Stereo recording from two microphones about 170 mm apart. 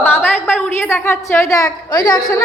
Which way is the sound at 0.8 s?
15° left (ahead or behind).